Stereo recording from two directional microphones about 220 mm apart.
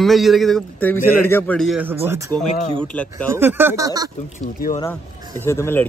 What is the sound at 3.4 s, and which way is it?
Speech, 10° right (ahead or behind).